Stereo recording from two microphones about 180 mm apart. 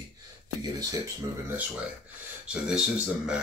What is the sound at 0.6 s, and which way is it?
Speech, 20° right (ahead or behind).